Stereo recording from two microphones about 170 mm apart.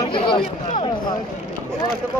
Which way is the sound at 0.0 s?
30° left (ahead or behind).